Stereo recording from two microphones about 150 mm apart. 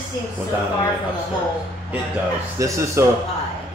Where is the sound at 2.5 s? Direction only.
20° right (ahead or behind).